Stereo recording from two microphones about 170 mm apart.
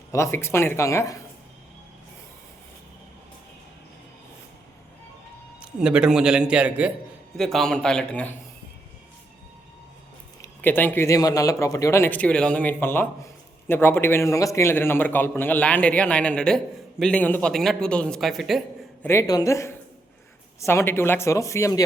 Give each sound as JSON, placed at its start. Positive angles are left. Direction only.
{"t": 0.1, "sound": "a man's voice", "side_deg": 15}
{"t": 5.5, "sound": "speech", "side_deg": -5}
{"t": 7.3, "sound": "speech", "side_deg": 5}
{"t": 10.4, "sound": "a man's voice", "side_deg": 10}
{"t": 19.0, "sound": "a man's voice", "side_deg": 20}